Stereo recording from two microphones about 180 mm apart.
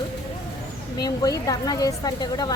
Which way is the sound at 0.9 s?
20° left (ahead or behind).